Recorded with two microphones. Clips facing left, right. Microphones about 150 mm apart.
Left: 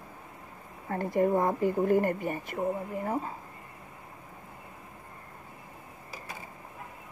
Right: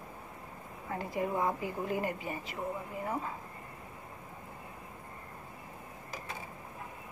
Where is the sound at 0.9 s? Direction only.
55° left (ahead or behind).